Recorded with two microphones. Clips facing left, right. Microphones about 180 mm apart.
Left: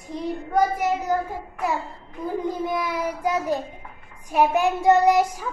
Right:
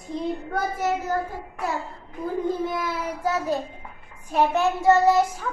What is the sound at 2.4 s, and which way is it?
A child's voice, 15° left (ahead or behind).